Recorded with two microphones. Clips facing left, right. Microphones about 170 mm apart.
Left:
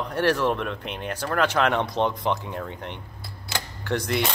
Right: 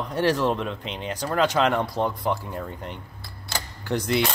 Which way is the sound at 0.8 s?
55° left (ahead or behind).